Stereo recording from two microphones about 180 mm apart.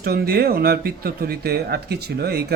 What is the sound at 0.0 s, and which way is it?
Speech, 60° right (ahead or behind).